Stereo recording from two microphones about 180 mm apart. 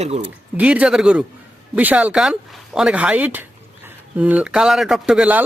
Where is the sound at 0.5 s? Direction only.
5° right (ahead or behind).